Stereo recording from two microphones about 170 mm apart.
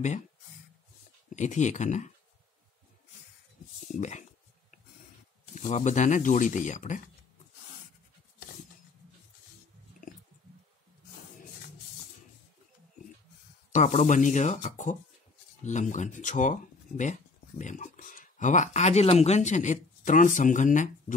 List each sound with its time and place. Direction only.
1.3 s speech: 45° left (ahead or behind)
3.9 s a sound: 45° left (ahead or behind)
5.5 s speech: 40° left (ahead or behind)
13.7 s speech: 45° left (ahead or behind)